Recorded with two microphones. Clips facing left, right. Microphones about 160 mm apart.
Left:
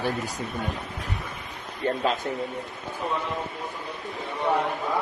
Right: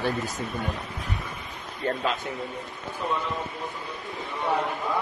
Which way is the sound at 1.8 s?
35° left (ahead or behind).